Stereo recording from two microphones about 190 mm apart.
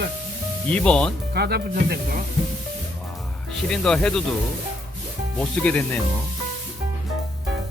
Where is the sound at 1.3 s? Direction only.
55° right (ahead or behind).